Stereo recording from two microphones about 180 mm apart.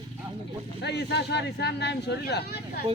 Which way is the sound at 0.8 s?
70° left (ahead or behind).